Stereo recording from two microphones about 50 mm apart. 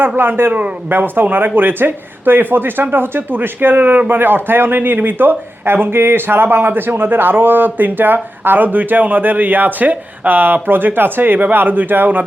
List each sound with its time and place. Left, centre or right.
0.2 s a man's voice: right